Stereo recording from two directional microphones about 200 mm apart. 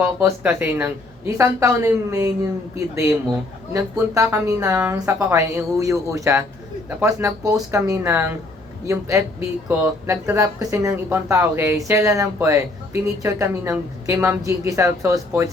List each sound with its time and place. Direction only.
0.0 s speech: 10° right (ahead or behind)